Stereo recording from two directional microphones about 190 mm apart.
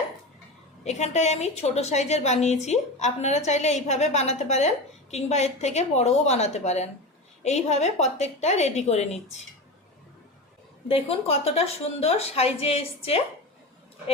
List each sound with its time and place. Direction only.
0.9 s a woman's voice: 35° left (ahead or behind)
10.8 s a woman's voice: 30° left (ahead or behind)